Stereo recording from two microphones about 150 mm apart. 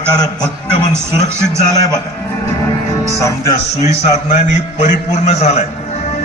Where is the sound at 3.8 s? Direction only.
50° left (ahead or behind).